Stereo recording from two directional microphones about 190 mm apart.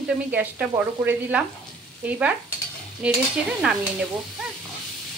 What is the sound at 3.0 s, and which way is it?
Stir, 5° right (ahead or behind).